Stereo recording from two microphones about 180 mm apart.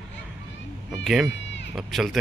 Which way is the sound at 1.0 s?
Centre (ahead or behind).